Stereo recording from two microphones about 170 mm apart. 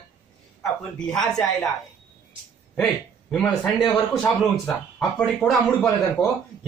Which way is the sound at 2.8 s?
5° left (ahead or behind).